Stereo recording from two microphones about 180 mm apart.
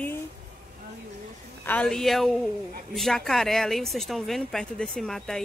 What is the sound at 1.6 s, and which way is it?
A woman's voice, 10° left (ahead or behind).